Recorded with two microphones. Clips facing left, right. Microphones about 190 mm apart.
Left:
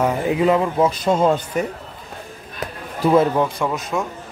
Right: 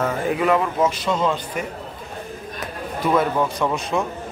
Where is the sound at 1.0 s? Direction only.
45° left (ahead or behind).